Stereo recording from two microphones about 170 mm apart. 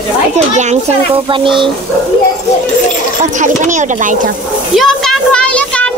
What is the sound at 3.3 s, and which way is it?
Speech, 45° right (ahead or behind).